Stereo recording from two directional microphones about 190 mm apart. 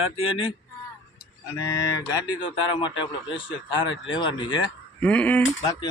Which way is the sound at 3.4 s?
85° left.